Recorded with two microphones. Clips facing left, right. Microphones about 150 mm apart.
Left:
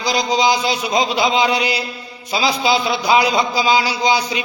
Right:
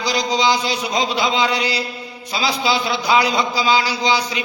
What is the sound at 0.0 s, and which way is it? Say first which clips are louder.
A man's voice: left 2 dB; 15° left (ahead or behind).